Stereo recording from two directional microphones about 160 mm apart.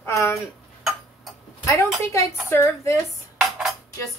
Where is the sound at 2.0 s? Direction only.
15° left (ahead or behind).